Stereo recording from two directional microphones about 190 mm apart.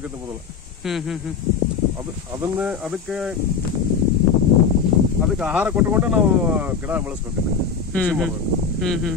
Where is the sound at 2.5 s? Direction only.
5° right (ahead or behind).